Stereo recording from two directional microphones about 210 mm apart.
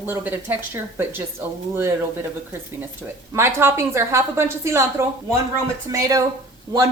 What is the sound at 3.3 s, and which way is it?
A woman's voice, 10° right (ahead or behind).